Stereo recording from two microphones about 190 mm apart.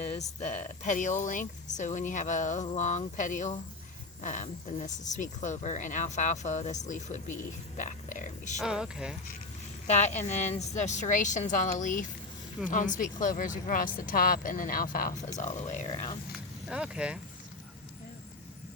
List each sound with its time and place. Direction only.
0.3 s speech: 35° left (ahead or behind)
8.6 s speech: 5° right (ahead or behind)
9.8 s speech: 35° left (ahead or behind)
16.6 s speech: 5° right (ahead or behind)